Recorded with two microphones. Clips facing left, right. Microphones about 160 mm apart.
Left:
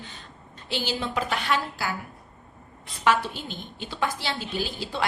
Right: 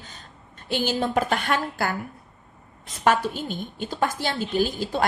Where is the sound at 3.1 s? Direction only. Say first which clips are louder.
Right 2 dB; 45° right (ahead or behind).